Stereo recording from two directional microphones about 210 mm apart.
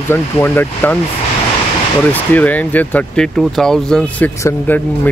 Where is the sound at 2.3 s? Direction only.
10° left (ahead or behind).